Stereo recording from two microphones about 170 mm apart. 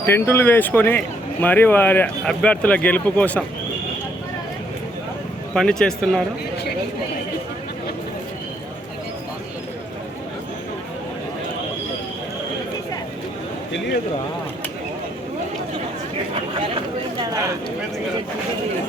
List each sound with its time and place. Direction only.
0.0 s speech: 15° left (ahead or behind)
5.5 s speech: 5° left (ahead or behind)
13.7 s speech: 90° left
17.2 s a sound: 20° right (ahead or behind)